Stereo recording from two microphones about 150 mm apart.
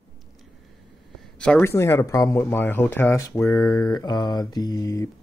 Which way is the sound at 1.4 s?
10° left (ahead or behind).